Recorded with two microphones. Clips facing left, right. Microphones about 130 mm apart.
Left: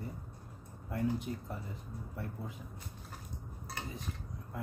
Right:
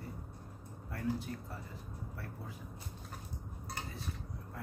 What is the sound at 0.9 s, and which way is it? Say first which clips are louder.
Speech: left 3 dB; 20° left (ahead or behind).